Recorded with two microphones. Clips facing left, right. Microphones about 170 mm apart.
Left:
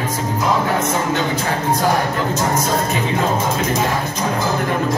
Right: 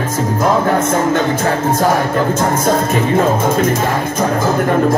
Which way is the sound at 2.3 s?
50° right (ahead or behind).